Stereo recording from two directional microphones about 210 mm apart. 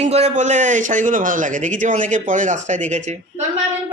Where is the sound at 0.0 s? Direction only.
30° right (ahead or behind).